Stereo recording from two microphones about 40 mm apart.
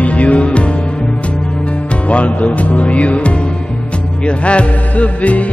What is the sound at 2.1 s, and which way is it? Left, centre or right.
Music, left.